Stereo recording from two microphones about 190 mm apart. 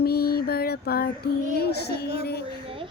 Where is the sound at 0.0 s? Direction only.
55° left (ahead or behind).